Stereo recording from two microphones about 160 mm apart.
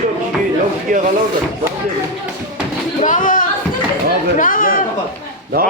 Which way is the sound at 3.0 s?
55° left (ahead or behind).